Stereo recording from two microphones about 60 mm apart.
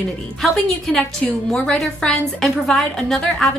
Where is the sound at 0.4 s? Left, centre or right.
Centre.